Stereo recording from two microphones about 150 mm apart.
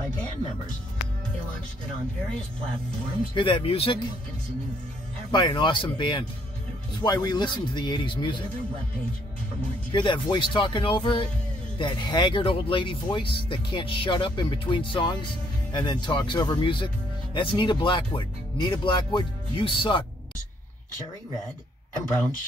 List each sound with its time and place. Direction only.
3.3 s speech: 35° left (ahead or behind)
5.3 s speech: 30° left (ahead or behind)
9.9 s speech: 30° left (ahead or behind)